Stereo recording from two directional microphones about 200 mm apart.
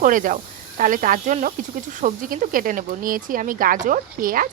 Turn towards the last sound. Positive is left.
turn(degrees=-45)  # may be behind; listen again after turning